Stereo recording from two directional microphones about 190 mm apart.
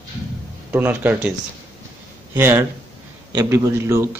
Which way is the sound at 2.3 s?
10° right (ahead or behind).